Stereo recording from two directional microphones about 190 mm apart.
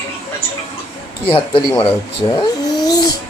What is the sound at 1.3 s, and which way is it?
Speech, 25° left (ahead or behind).